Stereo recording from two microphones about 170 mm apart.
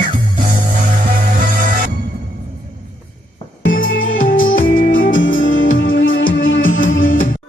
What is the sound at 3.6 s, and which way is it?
Music, 55° left (ahead or behind).